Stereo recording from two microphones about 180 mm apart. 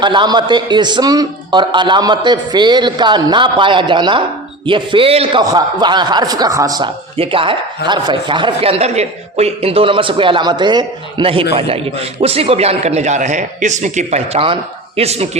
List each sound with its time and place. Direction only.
0.0 s a man's voice: 25° right (ahead or behind)